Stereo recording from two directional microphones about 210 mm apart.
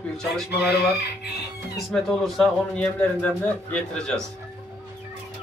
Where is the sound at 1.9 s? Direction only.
Centre (ahead or behind).